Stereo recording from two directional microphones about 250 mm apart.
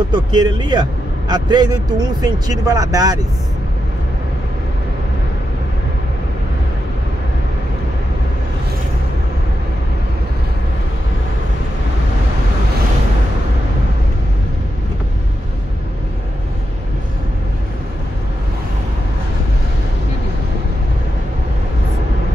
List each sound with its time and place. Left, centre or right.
0.1 s speech: centre